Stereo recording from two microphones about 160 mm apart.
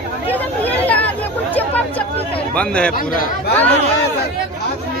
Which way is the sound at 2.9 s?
60° left (ahead or behind).